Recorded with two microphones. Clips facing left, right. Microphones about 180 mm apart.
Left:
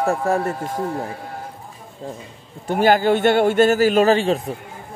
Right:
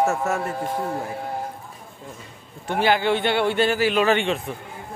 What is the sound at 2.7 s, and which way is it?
A man's voice, 45° left (ahead or behind).